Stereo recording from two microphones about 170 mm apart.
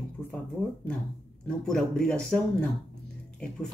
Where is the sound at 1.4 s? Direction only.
5° left (ahead or behind).